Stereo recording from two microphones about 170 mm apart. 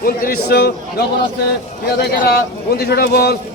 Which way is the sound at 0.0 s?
60° left (ahead or behind).